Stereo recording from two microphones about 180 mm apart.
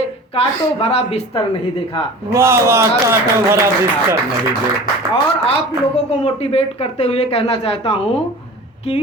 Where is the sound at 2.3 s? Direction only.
15° right (ahead or behind).